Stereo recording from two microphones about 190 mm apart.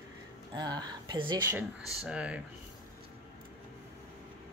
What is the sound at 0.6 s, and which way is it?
Speech, 20° right (ahead or behind).